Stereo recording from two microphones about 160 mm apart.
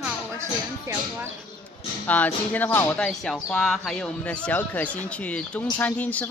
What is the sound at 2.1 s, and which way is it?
Speech, 10° left (ahead or behind).